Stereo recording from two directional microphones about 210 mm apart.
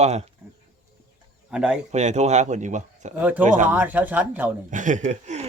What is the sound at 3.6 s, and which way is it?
Speech, 10° right (ahead or behind).